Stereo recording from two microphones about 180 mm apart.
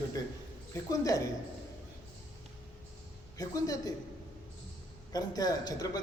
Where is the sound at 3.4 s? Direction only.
20° left (ahead or behind).